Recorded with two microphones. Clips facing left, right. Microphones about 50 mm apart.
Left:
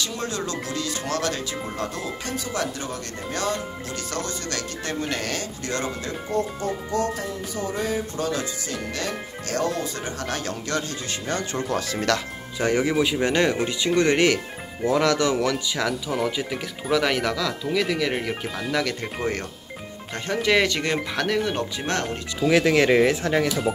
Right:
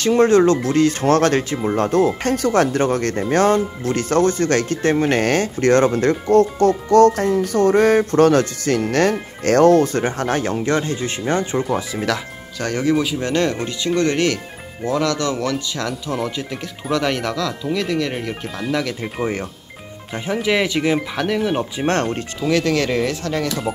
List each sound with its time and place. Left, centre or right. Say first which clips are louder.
0.0 s speech: right 16 dB; right
7.2 s speech: right 12 dB; right
11.6 s speech: right 3 dB; centre
12.5 s speech: right 2 dB; centre
14.8 s speech: right 1 dB; centre
15.0 s speech: even; centre
21.8 s speech: right 9 dB; right
22.5 s speech: left 1 dB; centre